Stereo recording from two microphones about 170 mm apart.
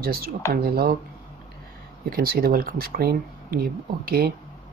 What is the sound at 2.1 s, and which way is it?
Speech, 65° right (ahead or behind).